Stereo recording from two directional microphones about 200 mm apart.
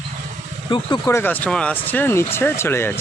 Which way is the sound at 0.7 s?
20° left (ahead or behind).